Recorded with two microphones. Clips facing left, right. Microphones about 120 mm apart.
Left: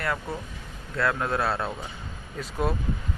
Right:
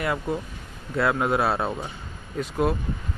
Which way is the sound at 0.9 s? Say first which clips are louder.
Right 4 dB; 25° right (ahead or behind).